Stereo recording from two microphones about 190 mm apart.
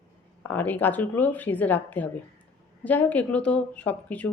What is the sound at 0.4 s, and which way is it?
Speech, 10° left (ahead or behind).